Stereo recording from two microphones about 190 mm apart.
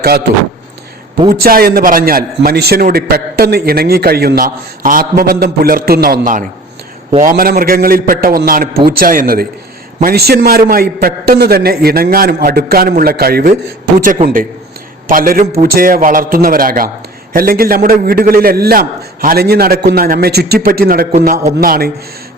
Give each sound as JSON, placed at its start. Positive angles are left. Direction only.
{"t": 1.3, "sound": "a man's voice", "side_deg": -50}
{"t": 15.1, "sound": "a man's voice", "side_deg": -50}